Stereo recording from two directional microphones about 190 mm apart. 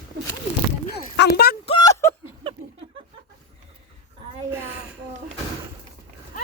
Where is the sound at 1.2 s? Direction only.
55° left (ahead or behind).